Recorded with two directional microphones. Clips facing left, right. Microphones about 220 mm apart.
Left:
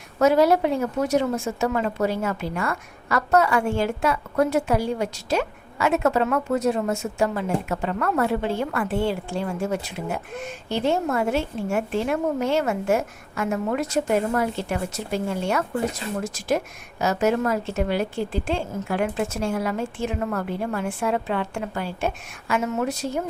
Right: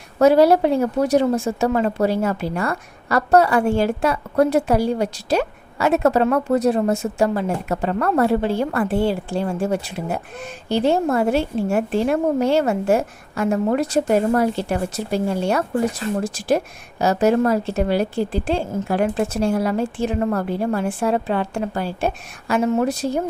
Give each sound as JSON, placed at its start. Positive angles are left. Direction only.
{"t": 0.2, "sound": "speech", "side_deg": -35}